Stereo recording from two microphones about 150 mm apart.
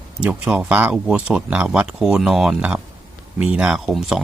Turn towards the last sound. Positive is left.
turn(degrees=-5)  # may be behind; listen again after turning